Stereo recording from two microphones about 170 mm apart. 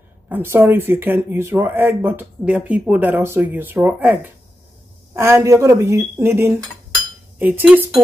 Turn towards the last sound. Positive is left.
turn(degrees=-10)  # may be behind; listen again after turning